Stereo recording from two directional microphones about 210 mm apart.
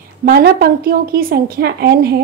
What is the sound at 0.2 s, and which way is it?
A woman's voice, 45° right (ahead or behind).